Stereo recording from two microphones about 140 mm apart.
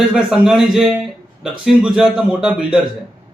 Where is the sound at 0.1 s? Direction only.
5° right (ahead or behind).